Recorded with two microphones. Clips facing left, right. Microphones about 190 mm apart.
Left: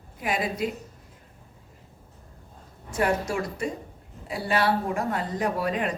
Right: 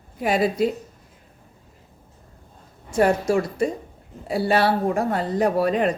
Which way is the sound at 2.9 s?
30° right (ahead or behind).